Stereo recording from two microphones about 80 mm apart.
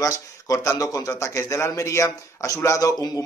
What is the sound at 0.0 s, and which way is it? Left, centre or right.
Speech, left.